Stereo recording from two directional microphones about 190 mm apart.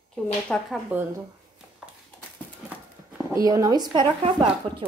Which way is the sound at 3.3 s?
15° right (ahead or behind).